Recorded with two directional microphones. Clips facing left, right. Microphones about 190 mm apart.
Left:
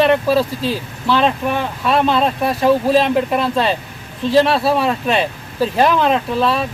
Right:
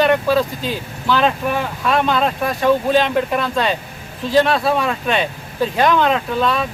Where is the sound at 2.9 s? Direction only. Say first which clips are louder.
Left 2 dB; centre (ahead or behind).